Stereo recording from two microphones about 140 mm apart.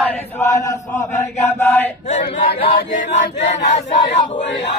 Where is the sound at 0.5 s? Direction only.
25° left (ahead or behind).